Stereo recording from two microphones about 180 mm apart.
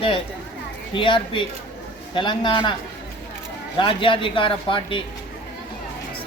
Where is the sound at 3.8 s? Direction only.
30° left (ahead or behind).